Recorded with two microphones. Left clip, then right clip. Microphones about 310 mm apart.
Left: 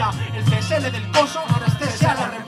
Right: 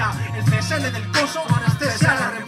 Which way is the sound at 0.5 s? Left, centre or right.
Left.